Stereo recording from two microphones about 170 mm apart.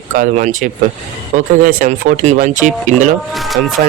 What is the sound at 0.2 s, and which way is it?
Speech, 50° right (ahead or behind).